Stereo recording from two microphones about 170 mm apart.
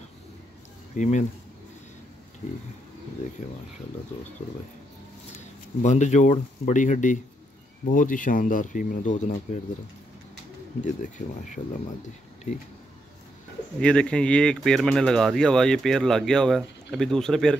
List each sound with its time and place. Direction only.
0.9 s speech: 45° left (ahead or behind)
4.4 s speech: 45° left (ahead or behind)
5.8 s speech: 45° left (ahead or behind)
10.8 s speech: 45° left (ahead or behind)
13.7 s speech: 5° left (ahead or behind)